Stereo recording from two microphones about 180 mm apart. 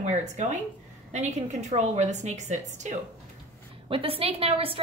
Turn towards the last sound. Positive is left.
turn(degrees=-30)  # may be behind; listen again after turning